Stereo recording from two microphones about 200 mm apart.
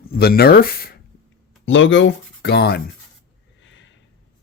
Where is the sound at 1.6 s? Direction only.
70° left (ahead or behind).